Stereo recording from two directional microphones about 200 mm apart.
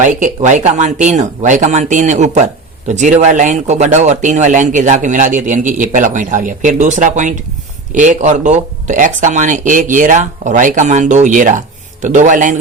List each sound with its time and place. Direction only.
0.0 s speech: 40° right (ahead or behind)